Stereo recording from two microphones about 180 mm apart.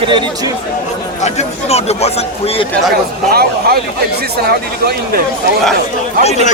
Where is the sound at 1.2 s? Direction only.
35° left (ahead or behind).